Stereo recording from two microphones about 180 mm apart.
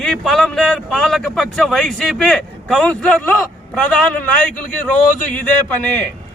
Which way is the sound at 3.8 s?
5° left (ahead or behind).